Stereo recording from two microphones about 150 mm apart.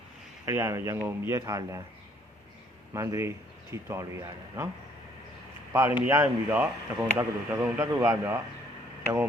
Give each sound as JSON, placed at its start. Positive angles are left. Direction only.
{"t": 0.4, "sound": "speech", "side_deg": -15}
{"t": 2.9, "sound": "a man's voice", "side_deg": -20}
{"t": 5.7, "sound": "speech", "side_deg": -15}